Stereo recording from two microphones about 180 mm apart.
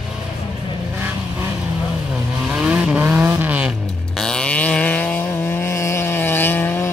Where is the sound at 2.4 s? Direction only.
5° right (ahead or behind).